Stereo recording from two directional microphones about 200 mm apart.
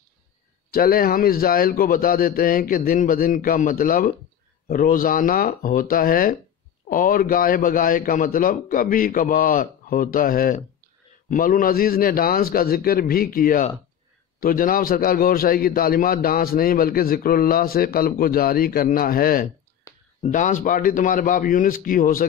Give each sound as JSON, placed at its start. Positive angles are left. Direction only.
{"t": 0.7, "sound": "a man's voice", "side_deg": 45}